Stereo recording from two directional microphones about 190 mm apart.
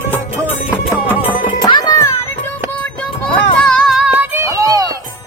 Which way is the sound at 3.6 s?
Centre (ahead or behind).